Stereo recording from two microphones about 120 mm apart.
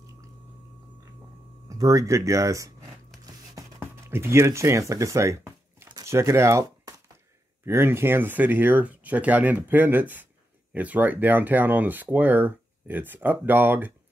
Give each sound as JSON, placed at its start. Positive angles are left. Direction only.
{"t": 1.7, "sound": "speech", "side_deg": -30}
{"t": 3.8, "sound": "speech", "side_deg": -20}